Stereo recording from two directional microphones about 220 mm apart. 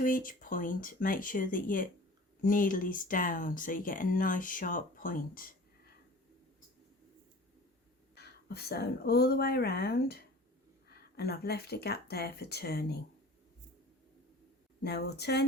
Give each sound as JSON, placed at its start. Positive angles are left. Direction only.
{"t": 0.0, "sound": "speech", "side_deg": 40}
{"t": 8.1, "sound": "speech", "side_deg": 45}
{"t": 14.8, "sound": "speech", "side_deg": 50}